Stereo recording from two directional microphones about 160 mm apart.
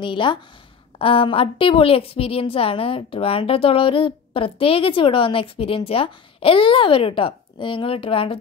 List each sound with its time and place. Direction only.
0.0 s a woman's voice: 30° left (ahead or behind)